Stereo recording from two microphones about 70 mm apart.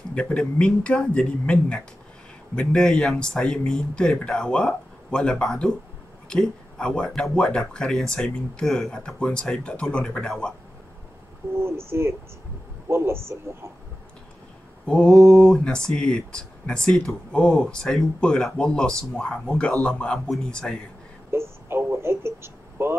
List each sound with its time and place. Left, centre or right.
0.1 s speech: centre
11.5 s speech: right
14.9 s speech: centre
21.3 s a sound: right